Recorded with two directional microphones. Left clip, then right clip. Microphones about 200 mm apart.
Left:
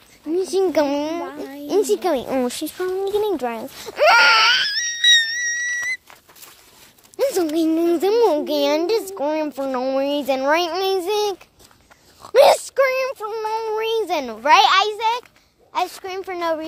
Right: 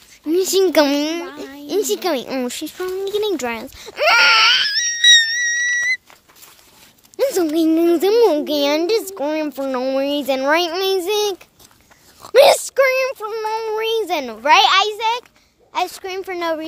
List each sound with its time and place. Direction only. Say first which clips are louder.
0.3 s a child's voice: right 4 dB; 25° right (ahead or behind)
1.2 s a woman's voice: left 1 dB; centre (ahead or behind); by 3.6 s 20° right (ahead or behind)
3.8 s wail: even; 5° left (ahead or behind)
5.3 s music: right 4 dB; 10° right (ahead or behind)
7.2 s a sound: right 2 dB; 15° right (ahead or behind)
7.7 s a child's voice: right 4 dB; 25° right (ahead or behind)